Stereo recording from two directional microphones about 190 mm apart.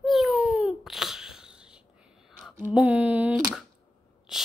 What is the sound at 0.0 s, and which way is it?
Babbling, centre (ahead or behind).